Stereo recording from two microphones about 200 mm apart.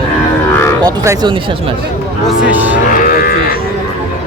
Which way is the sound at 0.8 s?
15° right (ahead or behind).